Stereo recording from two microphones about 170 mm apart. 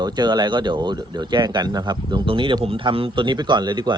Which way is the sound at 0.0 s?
25° right (ahead or behind).